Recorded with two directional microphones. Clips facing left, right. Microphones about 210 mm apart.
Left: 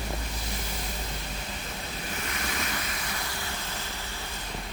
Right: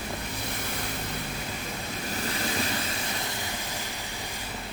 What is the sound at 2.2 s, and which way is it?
Vehicle, 30° right (ahead or behind).